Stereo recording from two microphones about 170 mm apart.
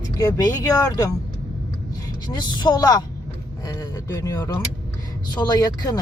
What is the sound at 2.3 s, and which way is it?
Speech, 25° left (ahead or behind).